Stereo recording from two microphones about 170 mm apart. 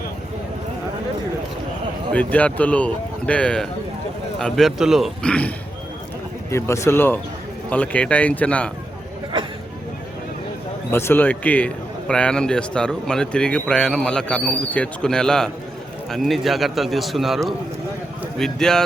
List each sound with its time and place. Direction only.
2.1 s a man's voice: 10° left (ahead or behind)
10.9 s a man's voice: 15° left (ahead or behind)